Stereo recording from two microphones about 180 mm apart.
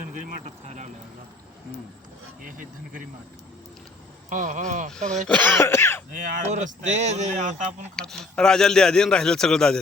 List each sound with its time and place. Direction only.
0.4 s speech: 40° right (ahead or behind)
2.4 s speech: 50° right (ahead or behind)
4.3 s speech: 45° right (ahead or behind)
5.3 s cough: 10° left (ahead or behind)
6.1 s speech: 40° right (ahead or behind)
7.9 s a man's voice: centre (ahead or behind)